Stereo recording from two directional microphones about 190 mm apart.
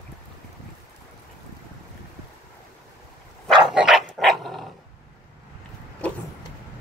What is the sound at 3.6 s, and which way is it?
Dog, 5° right (ahead or behind).